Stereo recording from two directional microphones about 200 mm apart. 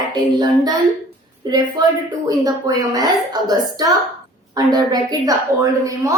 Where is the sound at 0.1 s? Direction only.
20° right (ahead or behind).